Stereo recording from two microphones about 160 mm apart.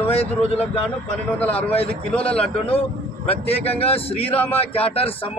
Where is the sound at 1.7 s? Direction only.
35° left (ahead or behind).